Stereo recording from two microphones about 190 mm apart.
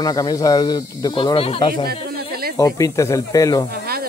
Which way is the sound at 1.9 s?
55° right (ahead or behind).